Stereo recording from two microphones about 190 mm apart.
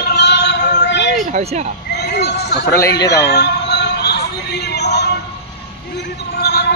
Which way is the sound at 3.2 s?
60° left (ahead or behind).